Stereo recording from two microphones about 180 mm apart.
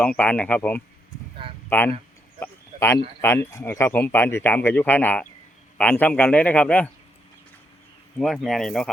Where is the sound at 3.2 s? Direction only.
15° left (ahead or behind).